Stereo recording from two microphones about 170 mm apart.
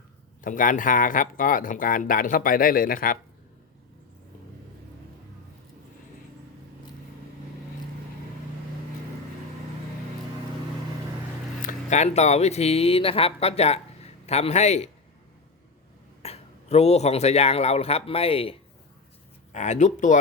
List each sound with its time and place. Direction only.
0.4 s speech: 50° left (ahead or behind)
11.6 s speech: 45° left (ahead or behind)
16.2 s a man's voice: 40° left (ahead or behind)
19.5 s speech: 45° left (ahead or behind)